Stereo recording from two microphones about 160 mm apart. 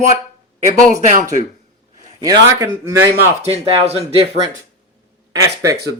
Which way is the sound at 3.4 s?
40° right (ahead or behind).